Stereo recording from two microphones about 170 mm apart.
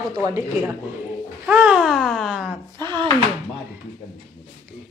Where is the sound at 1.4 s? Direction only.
10° right (ahead or behind).